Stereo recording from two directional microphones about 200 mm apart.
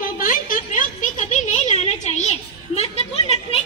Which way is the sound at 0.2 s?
45° left (ahead or behind).